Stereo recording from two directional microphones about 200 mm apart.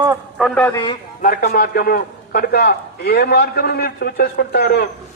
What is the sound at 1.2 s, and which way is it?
A man's voice, 45° left (ahead or behind).